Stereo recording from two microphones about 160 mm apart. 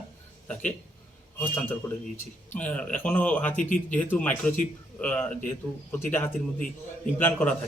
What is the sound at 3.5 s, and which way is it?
Speech, 50° left (ahead or behind).